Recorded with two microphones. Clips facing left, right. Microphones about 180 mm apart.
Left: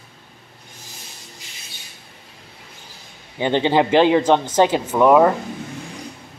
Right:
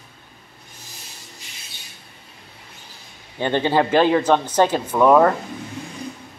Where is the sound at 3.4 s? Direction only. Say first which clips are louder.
Left 2 dB; 15° left (ahead or behind).